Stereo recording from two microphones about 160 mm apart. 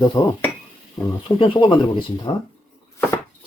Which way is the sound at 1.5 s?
30° left (ahead or behind).